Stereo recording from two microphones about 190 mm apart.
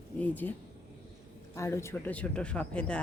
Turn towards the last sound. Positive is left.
turn(degrees=5)  # may be behind; listen again after turning